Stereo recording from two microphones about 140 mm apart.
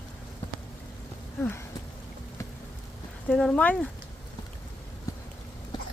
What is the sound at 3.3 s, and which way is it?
Speech, 5° left (ahead or behind).